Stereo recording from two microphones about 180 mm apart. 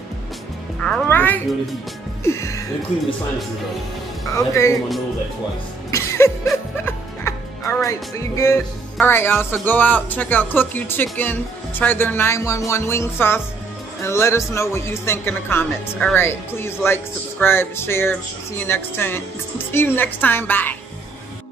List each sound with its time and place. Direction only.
0.7 s music: 5° left (ahead or behind)
2.2 s speech: 15° left (ahead or behind)
4.3 s speech: 15° left (ahead or behind)
5.9 s music: 15° left (ahead or behind)
8.9 s speech: 10° left (ahead or behind)